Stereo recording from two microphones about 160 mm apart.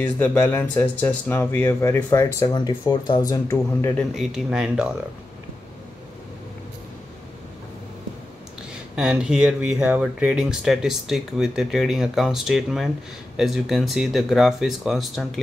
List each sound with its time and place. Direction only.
0.0 s speech: 10° left (ahead or behind)
3.5 s speech: 10° left (ahead or behind)
8.9 s speech: 5° right (ahead or behind)